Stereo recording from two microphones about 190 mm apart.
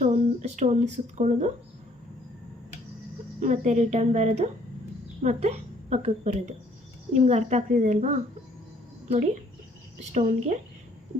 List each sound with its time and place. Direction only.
0.0 s a woman's voice: 35° right (ahead or behind)
3.4 s a woman's voice: 40° right (ahead or behind)